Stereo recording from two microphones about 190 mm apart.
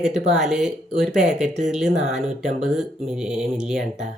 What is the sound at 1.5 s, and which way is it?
Speech, 35° right (ahead or behind).